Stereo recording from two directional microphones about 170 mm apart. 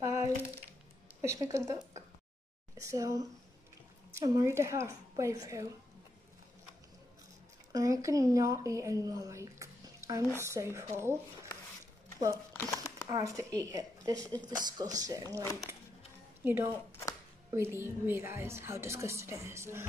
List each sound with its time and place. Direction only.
0.0 s a sound: 15° right (ahead or behind)
1.2 s a woman's voice: 15° right (ahead or behind)
7.7 s a woman's voice: 20° right (ahead or behind)
12.5 s crumpling: 20° left (ahead or behind)
13.1 s a woman's voice: 20° right (ahead or behind)
16.4 s a woman's voice: 10° right (ahead or behind)